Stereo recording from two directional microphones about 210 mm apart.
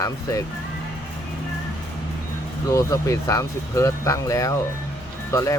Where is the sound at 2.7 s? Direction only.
15° left (ahead or behind).